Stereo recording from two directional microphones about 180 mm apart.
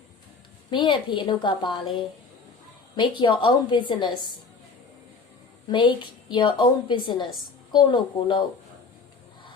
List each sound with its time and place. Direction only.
0.7 s a woman's voice: 25° left (ahead or behind)
2.9 s a woman's voice: 25° left (ahead or behind)
5.7 s a woman's voice: 25° left (ahead or behind)